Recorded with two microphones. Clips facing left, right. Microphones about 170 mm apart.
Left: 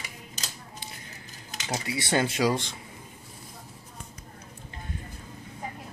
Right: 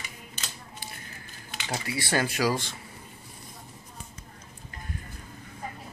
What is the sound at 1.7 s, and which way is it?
Speech, 20° left (ahead or behind).